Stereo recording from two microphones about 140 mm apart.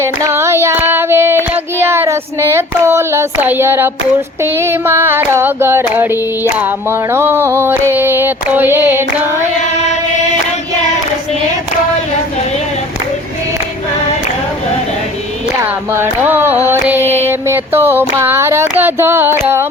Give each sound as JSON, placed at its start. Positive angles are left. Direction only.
{"t": 0.0, "sound": "child singing", "side_deg": -20}
{"t": 15.6, "sound": "child singing", "side_deg": -15}